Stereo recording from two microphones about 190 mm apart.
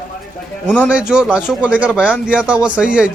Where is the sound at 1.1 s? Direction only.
5° right (ahead or behind).